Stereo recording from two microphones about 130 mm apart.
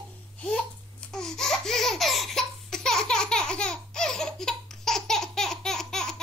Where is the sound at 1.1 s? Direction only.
5° left (ahead or behind).